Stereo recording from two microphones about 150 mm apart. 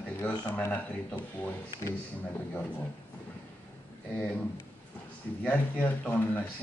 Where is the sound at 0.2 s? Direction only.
15° left (ahead or behind).